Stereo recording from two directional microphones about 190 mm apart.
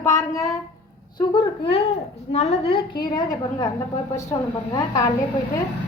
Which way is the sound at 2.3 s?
30° left (ahead or behind).